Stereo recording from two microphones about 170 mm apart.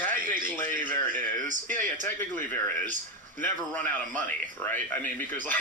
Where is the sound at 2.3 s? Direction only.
10° left (ahead or behind).